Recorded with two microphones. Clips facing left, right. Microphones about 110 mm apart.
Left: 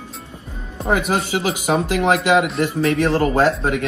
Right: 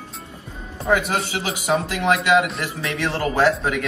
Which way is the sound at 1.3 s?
40° left (ahead or behind).